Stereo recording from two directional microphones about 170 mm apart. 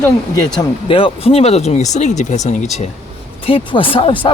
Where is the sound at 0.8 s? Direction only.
35° left (ahead or behind).